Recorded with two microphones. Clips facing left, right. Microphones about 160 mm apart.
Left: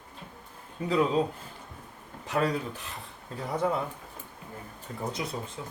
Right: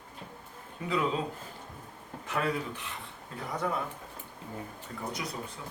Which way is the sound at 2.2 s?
35° left (ahead or behind).